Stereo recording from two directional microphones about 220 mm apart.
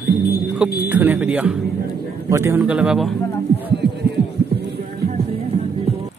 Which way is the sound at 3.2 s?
10° left (ahead or behind).